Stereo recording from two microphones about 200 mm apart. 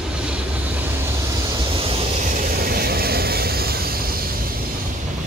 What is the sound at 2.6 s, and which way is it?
Vehicle, 50° right (ahead or behind).